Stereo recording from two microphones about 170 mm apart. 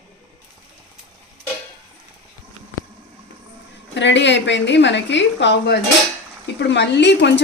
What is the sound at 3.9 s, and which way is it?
Speech, 90° left.